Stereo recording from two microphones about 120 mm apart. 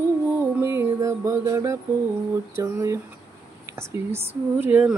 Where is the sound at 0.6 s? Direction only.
20° right (ahead or behind).